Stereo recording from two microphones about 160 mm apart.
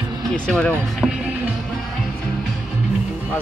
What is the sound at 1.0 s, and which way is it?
Music, centre (ahead or behind).